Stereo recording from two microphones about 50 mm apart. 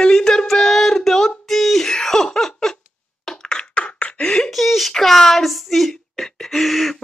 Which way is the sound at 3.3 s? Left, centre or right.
Centre.